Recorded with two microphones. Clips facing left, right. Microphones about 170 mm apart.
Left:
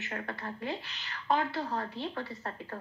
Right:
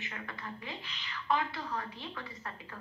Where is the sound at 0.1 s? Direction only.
45° left (ahead or behind).